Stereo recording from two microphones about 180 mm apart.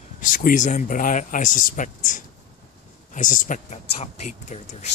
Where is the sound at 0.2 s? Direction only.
50° left (ahead or behind).